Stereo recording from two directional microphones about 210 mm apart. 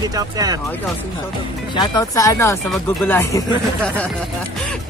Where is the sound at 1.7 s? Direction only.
20° left (ahead or behind).